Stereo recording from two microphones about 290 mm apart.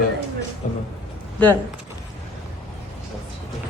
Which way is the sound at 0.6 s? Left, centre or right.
Left.